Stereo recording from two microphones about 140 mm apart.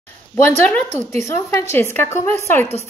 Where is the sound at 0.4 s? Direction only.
10° left (ahead or behind).